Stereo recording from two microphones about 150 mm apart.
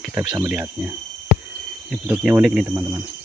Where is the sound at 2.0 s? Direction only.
10° right (ahead or behind).